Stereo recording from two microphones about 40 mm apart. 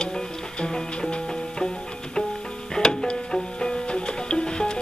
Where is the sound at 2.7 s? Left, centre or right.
Centre.